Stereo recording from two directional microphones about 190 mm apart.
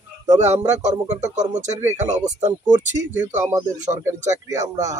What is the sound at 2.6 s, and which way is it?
Speech, 5° right (ahead or behind).